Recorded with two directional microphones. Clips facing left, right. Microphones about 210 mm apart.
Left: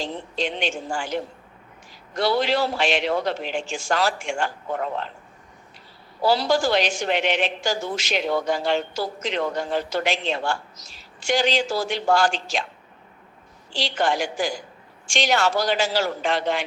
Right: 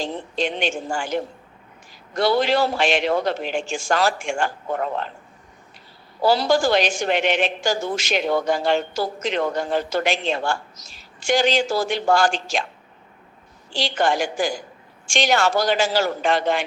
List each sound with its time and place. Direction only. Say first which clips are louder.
0.0 s a woman's voice: right 3 dB; 50° right (ahead or behind)
6.2 s a woman's voice: right 2 dB; 50° right (ahead or behind)
13.7 s a woman's voice: right 2 dB; 50° right (ahead or behind)